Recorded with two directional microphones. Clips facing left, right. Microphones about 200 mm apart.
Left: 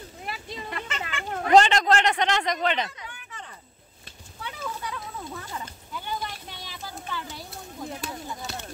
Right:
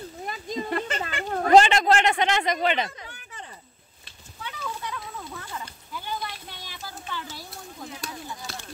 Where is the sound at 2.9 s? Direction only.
35° right (ahead or behind).